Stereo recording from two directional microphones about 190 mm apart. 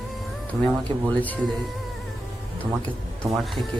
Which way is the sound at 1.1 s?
10° left (ahead or behind).